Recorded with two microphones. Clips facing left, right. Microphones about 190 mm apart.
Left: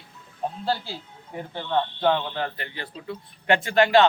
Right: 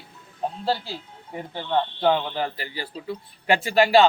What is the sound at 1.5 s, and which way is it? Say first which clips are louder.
A man's voice: right 1 dB; 5° right (ahead or behind).